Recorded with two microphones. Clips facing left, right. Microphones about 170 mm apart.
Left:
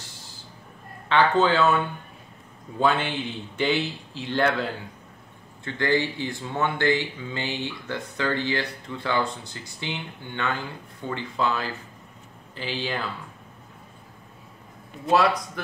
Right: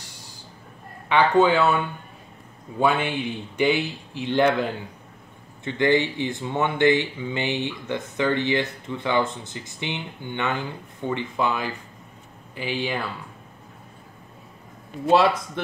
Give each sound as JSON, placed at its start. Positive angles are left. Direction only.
{"t": 1.0, "sound": "speech", "side_deg": -15}
{"t": 2.8, "sound": "speech", "side_deg": -10}
{"t": 15.0, "sound": "speech", "side_deg": -25}